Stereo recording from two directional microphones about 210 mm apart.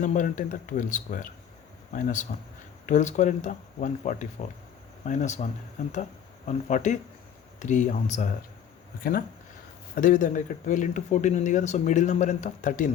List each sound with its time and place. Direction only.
0.0 s speech: 40° left (ahead or behind)
9.9 s speech: 40° left (ahead or behind)